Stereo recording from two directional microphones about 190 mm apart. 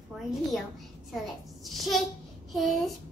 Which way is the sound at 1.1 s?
Centre (ahead or behind).